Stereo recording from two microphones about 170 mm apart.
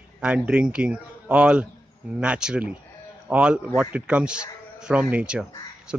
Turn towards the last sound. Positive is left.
turn(degrees=-10)  # may be behind; listen again after turning